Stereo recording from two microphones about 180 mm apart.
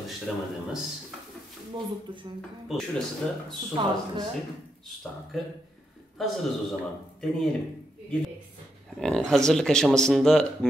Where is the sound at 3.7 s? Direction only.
25° right (ahead or behind).